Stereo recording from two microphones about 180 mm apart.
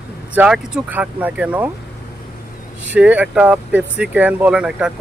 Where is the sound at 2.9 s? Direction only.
10° right (ahead or behind).